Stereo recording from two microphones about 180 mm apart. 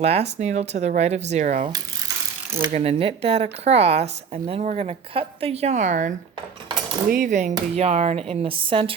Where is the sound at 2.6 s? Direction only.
35° right (ahead or behind).